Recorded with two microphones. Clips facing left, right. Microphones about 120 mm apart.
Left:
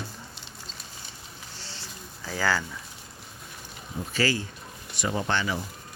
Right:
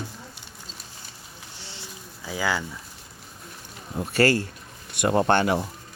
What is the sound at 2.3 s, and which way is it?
Speech, 15° right (ahead or behind).